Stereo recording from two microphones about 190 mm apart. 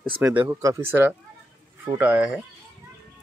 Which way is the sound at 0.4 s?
20° right (ahead or behind).